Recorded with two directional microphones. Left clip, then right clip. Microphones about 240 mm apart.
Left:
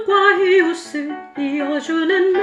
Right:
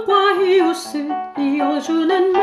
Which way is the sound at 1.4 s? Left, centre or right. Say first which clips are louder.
Right 1 dB; centre.